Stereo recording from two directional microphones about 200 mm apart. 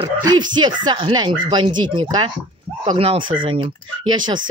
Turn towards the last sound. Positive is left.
turn(degrees=-20)  # may be behind; listen again after turning